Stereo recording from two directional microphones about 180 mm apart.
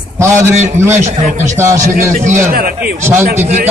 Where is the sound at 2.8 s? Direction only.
10° right (ahead or behind).